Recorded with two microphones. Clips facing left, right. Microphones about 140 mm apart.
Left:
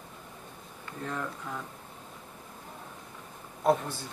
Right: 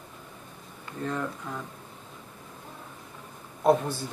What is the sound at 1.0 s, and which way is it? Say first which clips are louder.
Speech: right 4 dB; centre (ahead or behind).